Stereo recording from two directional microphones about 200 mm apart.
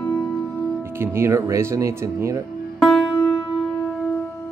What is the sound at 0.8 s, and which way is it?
Speech, 10° right (ahead or behind).